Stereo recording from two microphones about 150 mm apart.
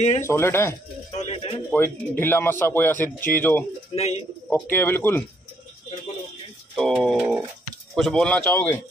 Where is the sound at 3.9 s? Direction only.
45° left (ahead or behind).